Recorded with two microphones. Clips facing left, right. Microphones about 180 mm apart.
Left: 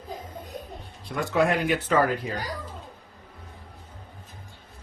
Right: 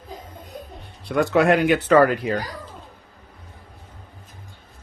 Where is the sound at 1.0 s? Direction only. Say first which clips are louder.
Right 6 dB; 70° right (ahead or behind).